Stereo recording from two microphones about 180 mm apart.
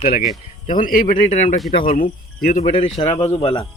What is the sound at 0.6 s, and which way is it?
Speech, 50° left (ahead or behind).